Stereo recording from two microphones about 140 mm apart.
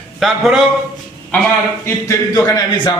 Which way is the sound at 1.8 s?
20° left (ahead or behind).